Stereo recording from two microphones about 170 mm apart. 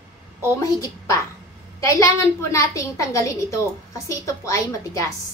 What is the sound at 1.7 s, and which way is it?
A woman's voice, 20° left (ahead or behind).